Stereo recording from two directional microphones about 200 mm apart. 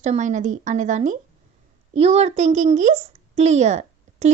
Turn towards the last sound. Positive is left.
turn(degrees=-35)  # may be behind; listen again after turning